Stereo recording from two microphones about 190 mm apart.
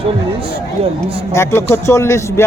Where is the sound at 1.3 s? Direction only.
15° left (ahead or behind).